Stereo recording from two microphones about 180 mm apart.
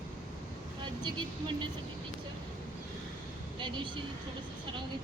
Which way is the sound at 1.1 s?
25° right (ahead or behind).